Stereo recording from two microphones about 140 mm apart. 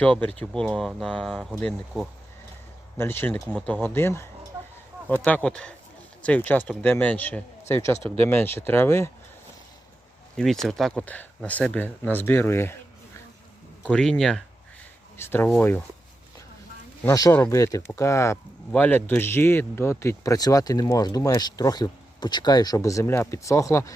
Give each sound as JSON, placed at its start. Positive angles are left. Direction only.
{"t": 0.0, "sound": "speech", "side_deg": 10}
{"t": 3.0, "sound": "a man's voice", "side_deg": 15}
{"t": 10.3, "sound": "speech", "side_deg": 0}
{"t": 13.9, "sound": "speech", "side_deg": 0}
{"t": 15.2, "sound": "speech", "side_deg": 15}
{"t": 17.0, "sound": "a man's voice", "side_deg": 25}